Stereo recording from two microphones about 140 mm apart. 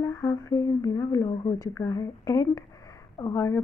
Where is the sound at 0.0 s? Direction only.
20° left (ahead or behind).